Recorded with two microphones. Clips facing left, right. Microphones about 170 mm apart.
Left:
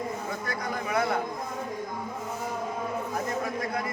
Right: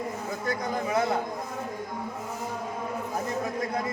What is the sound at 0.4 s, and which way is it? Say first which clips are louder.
Speech: right 6 dB; 25° right (ahead or behind).